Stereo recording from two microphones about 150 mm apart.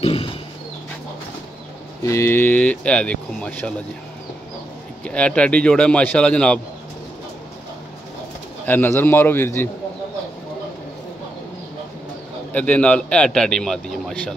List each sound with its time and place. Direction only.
0.0 s a sound: 40° left (ahead or behind)
2.0 s a man's voice: 15° left (ahead or behind)
5.0 s a man's voice: 10° left (ahead or behind)
8.6 s a man's voice: 15° left (ahead or behind)
12.5 s a man's voice: 10° left (ahead or behind)